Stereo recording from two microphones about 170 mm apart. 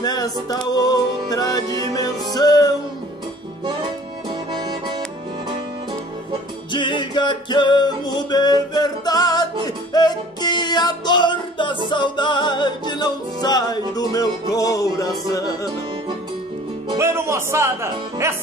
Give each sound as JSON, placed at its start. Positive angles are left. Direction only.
{"t": 0.0, "sound": "music", "side_deg": 20}
{"t": 3.6, "sound": "accordion", "side_deg": -25}
{"t": 6.7, "sound": "music", "side_deg": 30}
{"t": 16.9, "sound": "speech", "side_deg": -15}